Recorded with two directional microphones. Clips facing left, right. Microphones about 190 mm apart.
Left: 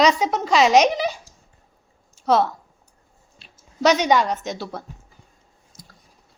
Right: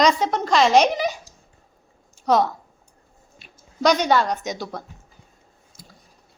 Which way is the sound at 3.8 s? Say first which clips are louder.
Left 1 dB; 10° left (ahead or behind).